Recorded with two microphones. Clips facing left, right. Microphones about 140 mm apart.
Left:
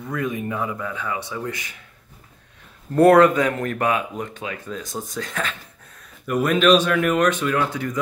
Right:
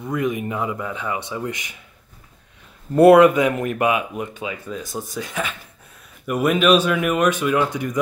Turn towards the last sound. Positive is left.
turn(degrees=-15)  # may be behind; listen again after turning